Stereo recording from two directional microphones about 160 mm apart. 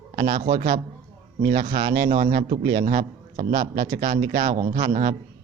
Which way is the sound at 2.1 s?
60° right (ahead or behind).